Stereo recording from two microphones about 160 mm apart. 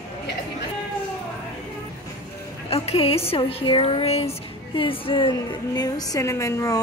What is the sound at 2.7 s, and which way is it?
A woman's voice, 40° left (ahead or behind).